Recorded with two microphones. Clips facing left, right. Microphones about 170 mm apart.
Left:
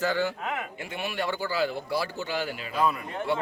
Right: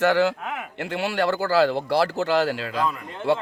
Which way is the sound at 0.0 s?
75° right (ahead or behind).